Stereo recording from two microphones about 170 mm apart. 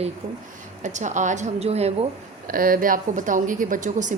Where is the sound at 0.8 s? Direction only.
45° right (ahead or behind).